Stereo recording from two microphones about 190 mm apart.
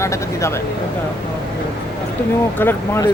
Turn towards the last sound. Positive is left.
turn(degrees=10)  # may be behind; listen again after turning